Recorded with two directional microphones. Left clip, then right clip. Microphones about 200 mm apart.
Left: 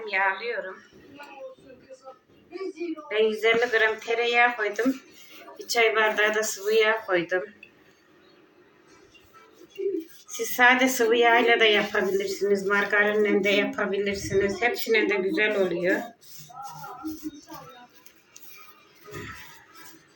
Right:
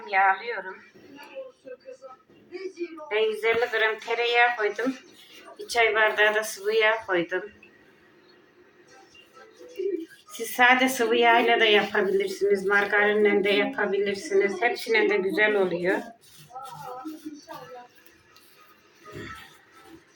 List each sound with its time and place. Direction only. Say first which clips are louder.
0.0 s speech: right 3 dB; 5° left (ahead or behind)
3.1 s speech: left 2 dB; 5° left (ahead or behind)
10.4 s speech: even; 5° left (ahead or behind)